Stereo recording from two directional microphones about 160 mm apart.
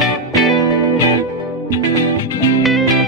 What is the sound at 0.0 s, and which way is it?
Music, centre (ahead or behind).